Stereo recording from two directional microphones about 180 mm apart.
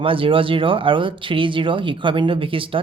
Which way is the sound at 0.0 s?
30° right (ahead or behind).